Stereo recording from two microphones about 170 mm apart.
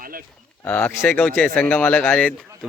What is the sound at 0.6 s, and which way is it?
A man's voice, 10° left (ahead or behind).